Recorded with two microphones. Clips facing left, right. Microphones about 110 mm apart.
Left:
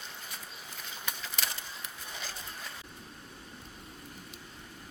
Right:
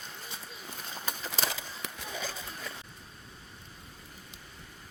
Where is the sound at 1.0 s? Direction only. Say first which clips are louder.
Right 3 dB; 40° right (ahead or behind).